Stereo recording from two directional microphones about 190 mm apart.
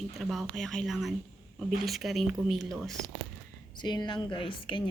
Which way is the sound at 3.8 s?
25° left (ahead or behind).